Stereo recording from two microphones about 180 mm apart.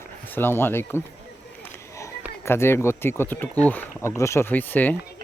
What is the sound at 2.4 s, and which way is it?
Speech, 15° left (ahead or behind).